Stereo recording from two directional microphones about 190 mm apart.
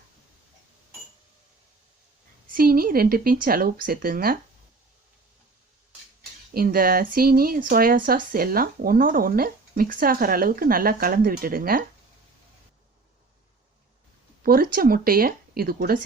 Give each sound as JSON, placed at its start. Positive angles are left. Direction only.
{"t": 2.5, "sound": "speech", "side_deg": -50}
{"t": 6.5, "sound": "speech", "side_deg": -50}
{"t": 14.4, "sound": "speech", "side_deg": -50}